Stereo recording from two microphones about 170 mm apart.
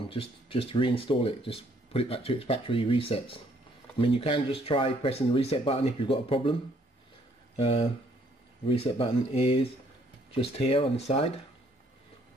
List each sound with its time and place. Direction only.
0.1 s speech: 35° left (ahead or behind)
7.5 s speech: 35° left (ahead or behind)